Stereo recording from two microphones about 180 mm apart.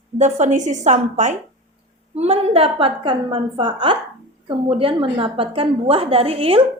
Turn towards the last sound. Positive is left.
turn(degrees=-30)  # may be behind; listen again after turning